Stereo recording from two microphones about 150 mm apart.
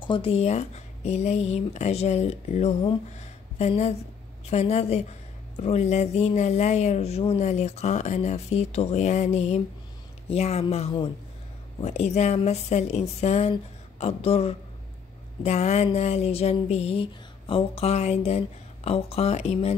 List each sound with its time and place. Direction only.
0.0 s speech: 35° left (ahead or behind)
3.2 s a sound: 50° left (ahead or behind)
4.5 s speech: 45° left (ahead or behind)